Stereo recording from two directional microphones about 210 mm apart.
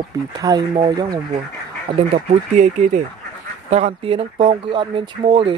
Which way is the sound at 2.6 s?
35° right (ahead or behind).